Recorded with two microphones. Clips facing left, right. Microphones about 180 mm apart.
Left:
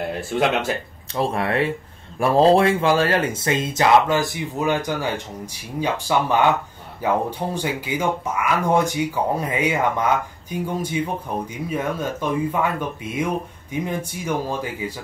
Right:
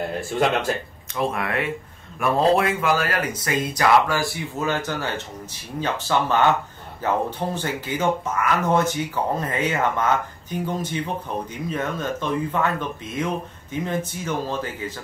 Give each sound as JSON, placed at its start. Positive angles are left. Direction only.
{"t": 0.3, "sound": "speech", "side_deg": 0}
{"t": 1.1, "sound": "speech", "side_deg": 30}